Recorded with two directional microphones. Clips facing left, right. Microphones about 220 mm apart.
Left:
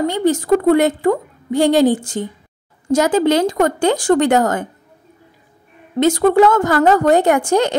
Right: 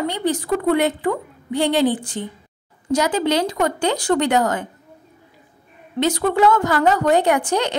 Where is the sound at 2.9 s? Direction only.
45° left (ahead or behind).